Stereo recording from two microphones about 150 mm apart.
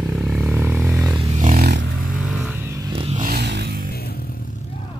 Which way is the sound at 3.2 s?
75° right (ahead or behind).